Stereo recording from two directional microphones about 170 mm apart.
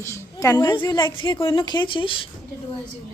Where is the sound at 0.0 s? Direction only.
15° left (ahead or behind).